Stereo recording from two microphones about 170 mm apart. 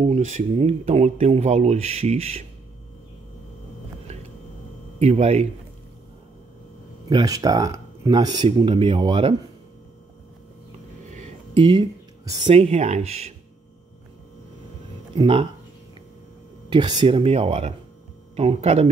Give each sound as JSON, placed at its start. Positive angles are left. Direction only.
{"t": 0.0, "sound": "speech", "side_deg": -45}
{"t": 4.9, "sound": "speech", "side_deg": -40}
{"t": 7.1, "sound": "speech", "side_deg": -25}
{"t": 11.5, "sound": "speech", "side_deg": -30}
{"t": 15.1, "sound": "speech", "side_deg": -30}
{"t": 16.6, "sound": "speech", "side_deg": -30}